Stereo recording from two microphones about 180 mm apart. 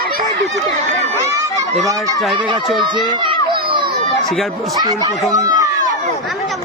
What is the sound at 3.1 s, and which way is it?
Children playing, 25° right (ahead or behind).